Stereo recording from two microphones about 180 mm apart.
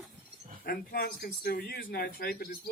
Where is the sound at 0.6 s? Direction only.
55° left (ahead or behind).